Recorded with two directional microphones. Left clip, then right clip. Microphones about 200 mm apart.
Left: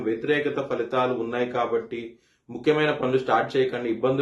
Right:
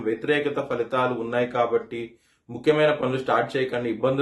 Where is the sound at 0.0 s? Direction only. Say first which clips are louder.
Right 1 dB; 20° right (ahead or behind).